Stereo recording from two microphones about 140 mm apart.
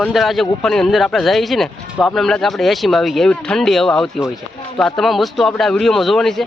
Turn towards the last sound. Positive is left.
turn(degrees=0)  # may be behind; listen again after turning